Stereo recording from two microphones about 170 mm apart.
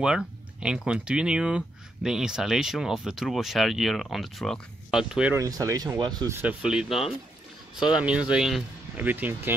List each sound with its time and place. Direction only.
0.0 s speech: 5° right (ahead or behind)
5.3 s speech: 20° right (ahead or behind)
6.4 s speech: 5° right (ahead or behind)